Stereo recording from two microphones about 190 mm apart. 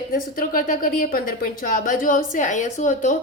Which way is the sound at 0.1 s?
45° left (ahead or behind).